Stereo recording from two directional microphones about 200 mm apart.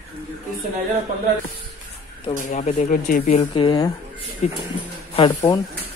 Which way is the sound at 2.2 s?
35° left (ahead or behind).